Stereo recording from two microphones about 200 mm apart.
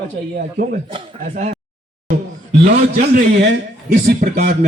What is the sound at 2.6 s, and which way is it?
A man's voice, 45° right (ahead or behind).